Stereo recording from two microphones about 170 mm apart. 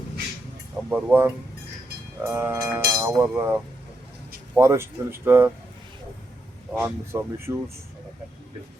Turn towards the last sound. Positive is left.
turn(degrees=-15)  # may be behind; listen again after turning